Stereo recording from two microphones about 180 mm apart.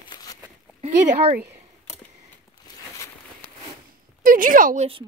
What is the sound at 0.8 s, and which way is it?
Speech, 40° right (ahead or behind).